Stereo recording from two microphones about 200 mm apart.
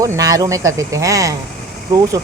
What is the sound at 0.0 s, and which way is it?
Speech, 15° right (ahead or behind).